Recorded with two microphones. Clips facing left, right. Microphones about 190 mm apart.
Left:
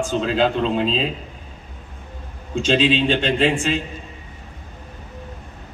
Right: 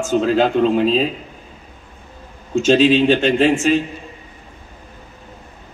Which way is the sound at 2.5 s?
45° right (ahead or behind).